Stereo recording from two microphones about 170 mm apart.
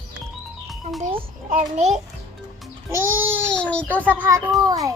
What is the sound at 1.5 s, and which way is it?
Speech, 45° right (ahead or behind).